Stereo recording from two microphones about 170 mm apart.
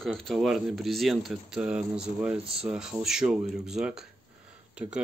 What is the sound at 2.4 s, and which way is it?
Speech, 35° right (ahead or behind).